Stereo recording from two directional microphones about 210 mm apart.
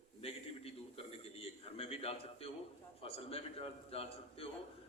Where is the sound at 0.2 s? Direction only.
30° left (ahead or behind).